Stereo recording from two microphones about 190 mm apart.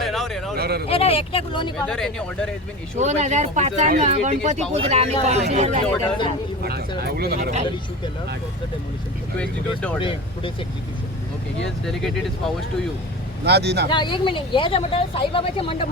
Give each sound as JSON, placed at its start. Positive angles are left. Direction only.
{"t": 0.0, "sound": "a sound", "side_deg": 0}
{"t": 0.5, "sound": "speech", "side_deg": -55}
{"t": 0.9, "sound": "speech", "side_deg": 30}
{"t": 1.9, "sound": "speech", "side_deg": 5}
{"t": 3.0, "sound": "speech", "side_deg": -40}
{"t": 6.1, "sound": "speech", "side_deg": 25}
{"t": 6.7, "sound": "speech", "side_deg": -55}
{"t": 9.4, "sound": "speech", "side_deg": 5}
{"t": 10.0, "sound": "speech", "side_deg": 30}
{"t": 11.6, "sound": "speech", "side_deg": 0}
{"t": 13.4, "sound": "speech", "side_deg": -60}
{"t": 13.9, "sound": "speech", "side_deg": 25}